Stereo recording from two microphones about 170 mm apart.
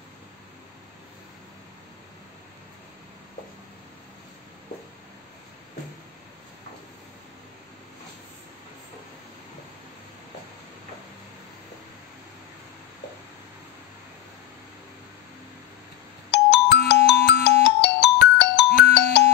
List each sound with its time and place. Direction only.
16.3 s ringtone: 85° left